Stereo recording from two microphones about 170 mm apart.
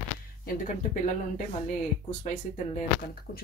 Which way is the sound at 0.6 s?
50° left (ahead or behind).